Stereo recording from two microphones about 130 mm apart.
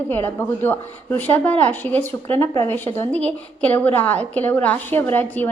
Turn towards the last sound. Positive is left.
turn(degrees=15)  # may be behind; listen again after turning